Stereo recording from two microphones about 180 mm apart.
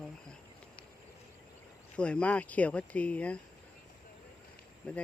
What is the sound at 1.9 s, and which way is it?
Speech, 5° left (ahead or behind).